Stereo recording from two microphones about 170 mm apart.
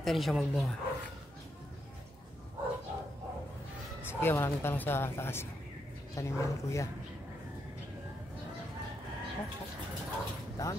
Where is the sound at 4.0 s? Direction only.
15° left (ahead or behind).